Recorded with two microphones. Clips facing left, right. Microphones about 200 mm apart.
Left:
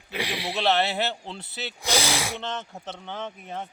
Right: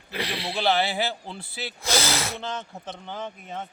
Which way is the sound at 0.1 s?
10° left (ahead or behind).